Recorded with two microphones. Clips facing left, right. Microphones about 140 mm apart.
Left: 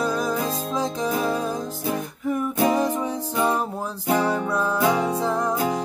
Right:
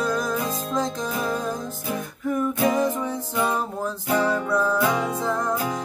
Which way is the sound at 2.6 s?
25° left (ahead or behind).